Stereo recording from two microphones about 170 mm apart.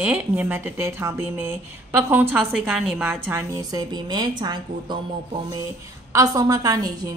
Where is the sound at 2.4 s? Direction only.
Centre (ahead or behind); by 5.0 s 25° right (ahead or behind).